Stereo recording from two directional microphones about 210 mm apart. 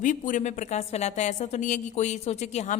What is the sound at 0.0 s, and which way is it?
A woman's voice, 40° left (ahead or behind).